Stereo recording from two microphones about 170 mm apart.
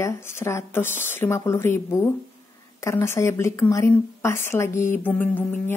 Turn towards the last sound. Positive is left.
turn(degrees=10)  # may be behind; listen again after turning